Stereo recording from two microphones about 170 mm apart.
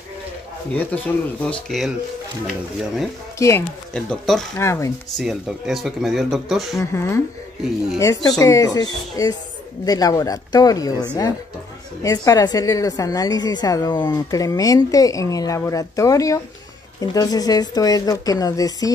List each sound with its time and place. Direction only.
0.7 s speech: 10° left (ahead or behind)
3.3 s speech: 15° left (ahead or behind)
3.9 s speech: 5° left (ahead or behind)
4.6 s speech: 15° left (ahead or behind)
5.1 s speech: centre (ahead or behind)
6.8 s a woman's voice: 15° left (ahead or behind)